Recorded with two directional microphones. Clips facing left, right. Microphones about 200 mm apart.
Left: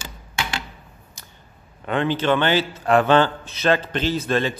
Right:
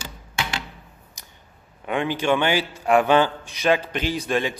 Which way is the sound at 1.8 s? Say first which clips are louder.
Left 2 dB; 10° right (ahead or behind).